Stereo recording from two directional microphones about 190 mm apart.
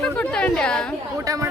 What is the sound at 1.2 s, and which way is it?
Speech, 20° right (ahead or behind).